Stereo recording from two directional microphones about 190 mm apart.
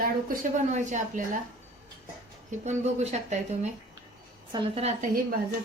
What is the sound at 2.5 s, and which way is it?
A woman's voice, 35° right (ahead or behind).